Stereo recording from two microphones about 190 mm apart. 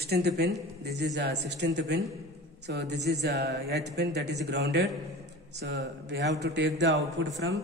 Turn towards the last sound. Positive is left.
turn(degrees=-65)  # may be behind; listen again after turning